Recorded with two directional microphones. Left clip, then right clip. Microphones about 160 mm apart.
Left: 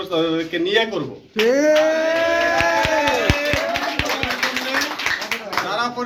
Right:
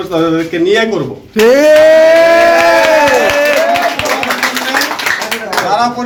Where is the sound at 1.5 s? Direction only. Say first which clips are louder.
Right 11 dB; 5° right (ahead or behind).